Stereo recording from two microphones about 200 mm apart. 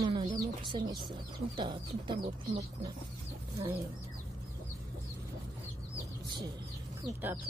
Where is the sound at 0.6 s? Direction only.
25° right (ahead or behind).